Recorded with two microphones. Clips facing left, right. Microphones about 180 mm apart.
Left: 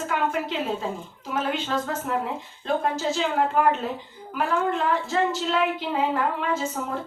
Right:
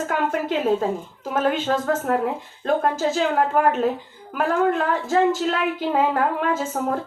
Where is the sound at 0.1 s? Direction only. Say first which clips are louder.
Right 2 dB; 50° right (ahead or behind).